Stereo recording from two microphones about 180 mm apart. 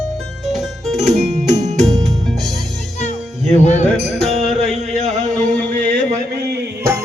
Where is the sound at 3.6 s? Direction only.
40° left (ahead or behind).